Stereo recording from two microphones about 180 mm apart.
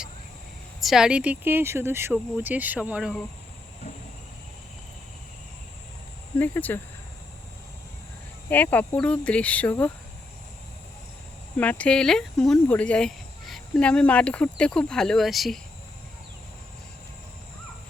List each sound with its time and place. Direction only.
0.8 s speech: centre (ahead or behind)
6.4 s speech: 10° left (ahead or behind)
8.4 s speech: 10° left (ahead or behind)
11.5 s speech: 10° left (ahead or behind)